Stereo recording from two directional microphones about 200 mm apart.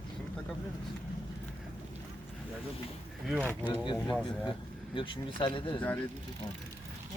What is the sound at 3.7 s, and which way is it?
Speech, 25° left (ahead or behind).